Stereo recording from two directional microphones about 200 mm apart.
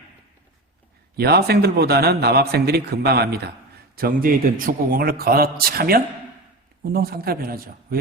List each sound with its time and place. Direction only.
1.1 s a man's voice: 50° right (ahead or behind)